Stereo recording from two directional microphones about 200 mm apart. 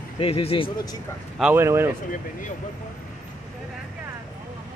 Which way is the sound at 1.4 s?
10° right (ahead or behind).